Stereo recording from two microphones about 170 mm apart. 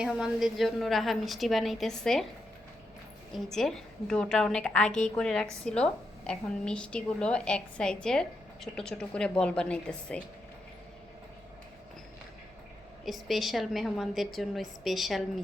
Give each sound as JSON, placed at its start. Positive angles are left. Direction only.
{"t": 0.0, "sound": "a woman's voice", "side_deg": -5}
{"t": 3.3, "sound": "a woman's voice", "side_deg": 5}
{"t": 13.1, "sound": "a woman's voice", "side_deg": 0}